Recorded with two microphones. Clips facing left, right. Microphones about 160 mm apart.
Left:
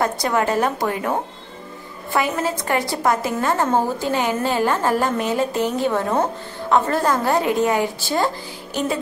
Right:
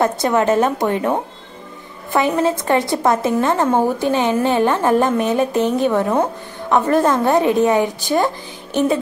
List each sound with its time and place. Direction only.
0.0 s a woman's voice: 20° right (ahead or behind)
2.1 s a woman's voice: 20° right (ahead or behind)